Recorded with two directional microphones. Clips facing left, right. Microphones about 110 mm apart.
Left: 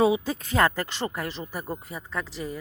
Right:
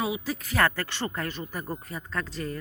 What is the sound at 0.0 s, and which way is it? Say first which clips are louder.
A woman's voice: left 8 dB; 30° left (ahead or behind).